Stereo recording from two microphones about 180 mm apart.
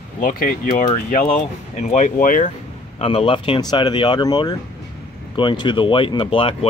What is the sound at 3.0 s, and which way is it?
Speech, 30° left (ahead or behind).